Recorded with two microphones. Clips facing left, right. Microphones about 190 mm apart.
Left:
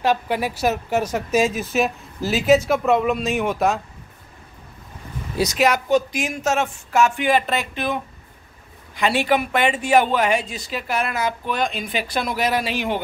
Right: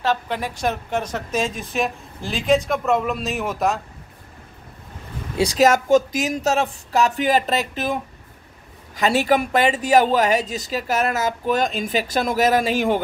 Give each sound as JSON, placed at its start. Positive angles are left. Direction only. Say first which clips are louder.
{"t": 0.0, "sound": "speech", "louder": "left 2 dB", "side_deg": 10}
{"t": 5.4, "sound": "speech", "louder": "right 3 dB", "side_deg": -30}
{"t": 5.7, "sound": "speech", "louder": "right 3 dB", "side_deg": -45}